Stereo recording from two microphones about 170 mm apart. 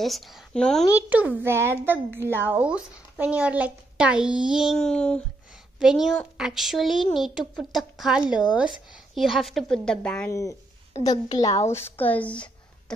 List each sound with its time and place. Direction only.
0.0 s speech: centre (ahead or behind)
0.9 s speech: 10° right (ahead or behind)
11.1 s a woman's voice: 20° left (ahead or behind)